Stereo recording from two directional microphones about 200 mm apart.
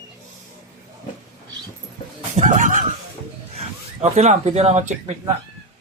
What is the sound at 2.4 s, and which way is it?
Speech, 40° right (ahead or behind).